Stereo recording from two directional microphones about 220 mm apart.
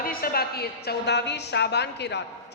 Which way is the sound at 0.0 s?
40° left (ahead or behind).